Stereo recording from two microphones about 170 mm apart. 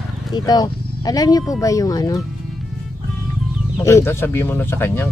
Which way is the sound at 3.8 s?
15° left (ahead or behind).